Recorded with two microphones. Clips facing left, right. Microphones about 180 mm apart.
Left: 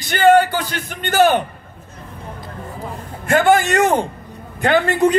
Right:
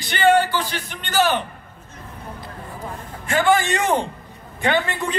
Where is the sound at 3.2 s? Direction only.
45° left (ahead or behind).